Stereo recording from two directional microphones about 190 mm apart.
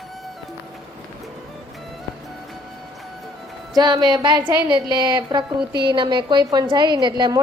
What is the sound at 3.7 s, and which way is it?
A woman's voice, 20° right (ahead or behind).